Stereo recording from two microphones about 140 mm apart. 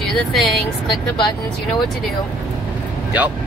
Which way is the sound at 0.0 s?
Centre (ahead or behind).